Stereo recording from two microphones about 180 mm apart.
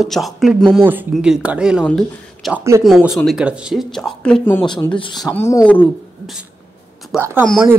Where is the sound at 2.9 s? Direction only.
Centre (ahead or behind).